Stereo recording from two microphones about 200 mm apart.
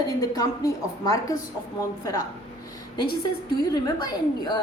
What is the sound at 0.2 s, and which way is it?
Speech, 15° left (ahead or behind).